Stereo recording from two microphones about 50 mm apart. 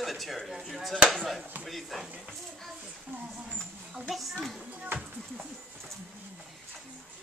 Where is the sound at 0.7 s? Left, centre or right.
Centre.